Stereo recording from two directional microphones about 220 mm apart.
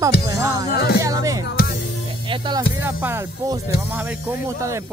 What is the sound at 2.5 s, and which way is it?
Speech, 15° right (ahead or behind).